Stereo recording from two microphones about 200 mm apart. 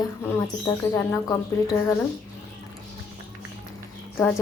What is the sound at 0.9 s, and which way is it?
Speech, 10° left (ahead or behind).